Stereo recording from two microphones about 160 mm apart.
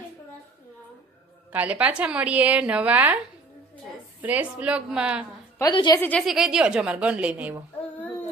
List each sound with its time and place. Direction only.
1.5 s a woman's voice: 10° right (ahead or behind)
4.2 s a woman's voice: 10° right (ahead or behind)
5.7 s a woman's voice: 30° left (ahead or behind)
6.0 s speech: 10° left (ahead or behind)
6.2 s a woman's voice: 5° right (ahead or behind)